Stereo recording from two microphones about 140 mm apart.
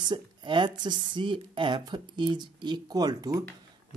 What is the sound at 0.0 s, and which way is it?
A woman's voice, 35° right (ahead or behind).